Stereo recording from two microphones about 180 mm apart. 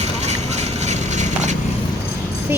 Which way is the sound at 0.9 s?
40° right (ahead or behind).